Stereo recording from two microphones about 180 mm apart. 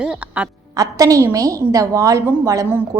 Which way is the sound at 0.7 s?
20° right (ahead or behind).